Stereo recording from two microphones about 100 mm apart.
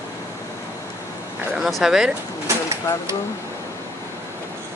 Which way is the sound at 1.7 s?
5° right (ahead or behind).